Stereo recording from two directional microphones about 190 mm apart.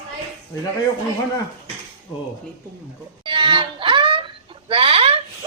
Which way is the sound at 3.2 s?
25° right (ahead or behind).